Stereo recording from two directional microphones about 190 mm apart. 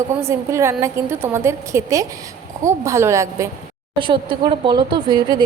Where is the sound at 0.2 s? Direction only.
15° right (ahead or behind).